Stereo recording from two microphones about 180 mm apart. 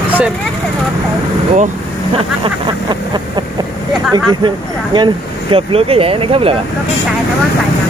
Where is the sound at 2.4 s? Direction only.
25° right (ahead or behind).